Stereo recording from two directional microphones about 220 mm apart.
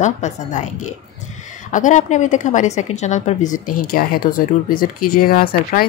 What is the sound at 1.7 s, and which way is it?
A woman's voice, 35° left (ahead or behind).